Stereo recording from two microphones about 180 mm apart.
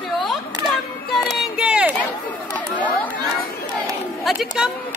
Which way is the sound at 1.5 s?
5° right (ahead or behind).